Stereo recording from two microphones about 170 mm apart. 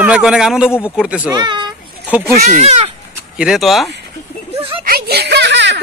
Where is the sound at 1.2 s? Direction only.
25° right (ahead or behind).